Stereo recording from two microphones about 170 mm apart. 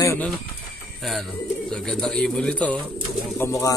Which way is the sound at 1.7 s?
5° left (ahead or behind).